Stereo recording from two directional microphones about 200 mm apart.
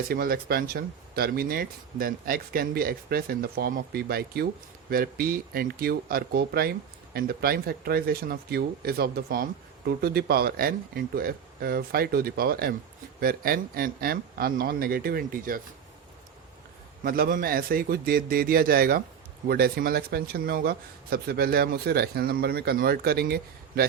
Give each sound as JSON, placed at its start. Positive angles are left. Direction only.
{"t": 0.1, "sound": "speech", "side_deg": -50}
{"t": 17.0, "sound": "speech", "side_deg": -45}